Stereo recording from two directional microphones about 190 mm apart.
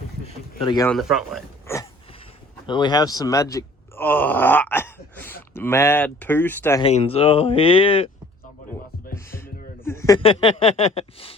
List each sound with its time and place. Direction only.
0.6 s speech: 25° left (ahead or behind)
0.9 s speech: centre (ahead or behind)
1.6 s a sound: 15° left (ahead or behind)
2.6 s speech: 25° left (ahead or behind)
6.8 s speech: 30° left (ahead or behind)
9.1 s music: 15° left (ahead or behind)
9.8 s a sound: 15° left (ahead or behind)
10.2 s speech: 30° left (ahead or behind)